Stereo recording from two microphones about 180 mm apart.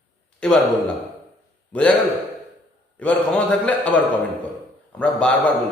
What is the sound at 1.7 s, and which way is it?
Speech, 5° left (ahead or behind).